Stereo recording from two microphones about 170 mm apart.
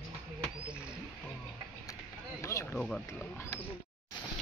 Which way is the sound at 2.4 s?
15° left (ahead or behind).